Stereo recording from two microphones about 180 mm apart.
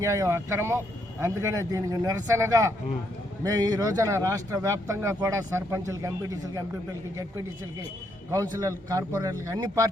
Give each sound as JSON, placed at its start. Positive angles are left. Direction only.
{"t": 0.0, "sound": "speech", "side_deg": -15}
{"t": 8.3, "sound": "speech", "side_deg": -20}